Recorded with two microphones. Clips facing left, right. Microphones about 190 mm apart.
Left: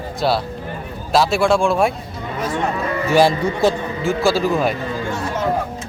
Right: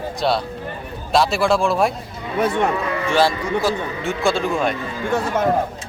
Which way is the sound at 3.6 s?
25° left (ahead or behind).